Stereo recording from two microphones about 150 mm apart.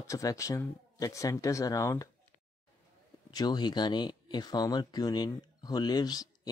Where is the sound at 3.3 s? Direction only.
25° left (ahead or behind).